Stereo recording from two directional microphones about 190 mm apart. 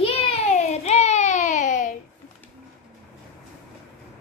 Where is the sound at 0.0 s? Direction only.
35° left (ahead or behind).